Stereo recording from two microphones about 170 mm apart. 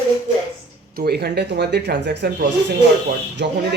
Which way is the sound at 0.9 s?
70° right (ahead or behind).